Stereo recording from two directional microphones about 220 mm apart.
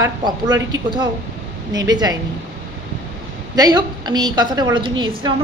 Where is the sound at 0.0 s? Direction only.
15° right (ahead or behind).